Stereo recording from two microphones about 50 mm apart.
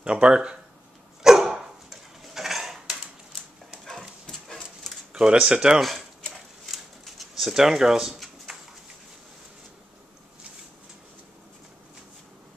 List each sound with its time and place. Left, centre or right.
0.0 s speech: centre
1.2 s dog: centre
5.1 s speech: centre
5.8 s a sound: centre